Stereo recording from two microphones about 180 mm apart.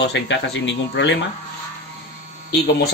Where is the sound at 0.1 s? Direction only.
90° left.